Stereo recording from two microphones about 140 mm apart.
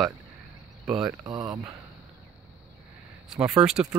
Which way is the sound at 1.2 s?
30° right (ahead or behind).